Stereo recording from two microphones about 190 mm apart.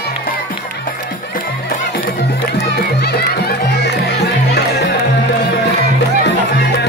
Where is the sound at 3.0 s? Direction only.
60° left (ahead or behind).